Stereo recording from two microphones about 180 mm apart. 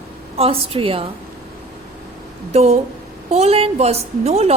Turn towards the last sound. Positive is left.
turn(degrees=-35)  # may be behind; listen again after turning